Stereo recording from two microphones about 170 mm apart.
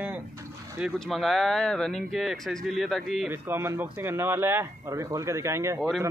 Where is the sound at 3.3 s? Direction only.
15° right (ahead or behind).